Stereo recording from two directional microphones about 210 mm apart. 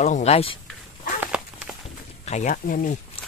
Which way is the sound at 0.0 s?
30° left (ahead or behind).